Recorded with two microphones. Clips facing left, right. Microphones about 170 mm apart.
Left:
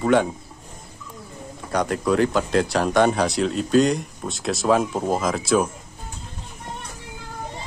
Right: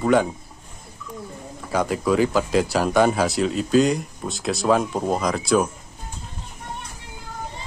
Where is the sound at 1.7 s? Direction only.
5° right (ahead or behind).